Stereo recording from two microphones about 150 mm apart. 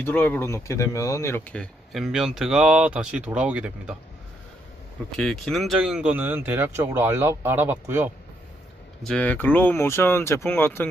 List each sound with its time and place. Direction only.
0.0 s speech: 15° left (ahead or behind)
1.5 s speech: 5° left (ahead or behind)
5.1 s speech: centre (ahead or behind)
9.0 s speech: 10° left (ahead or behind)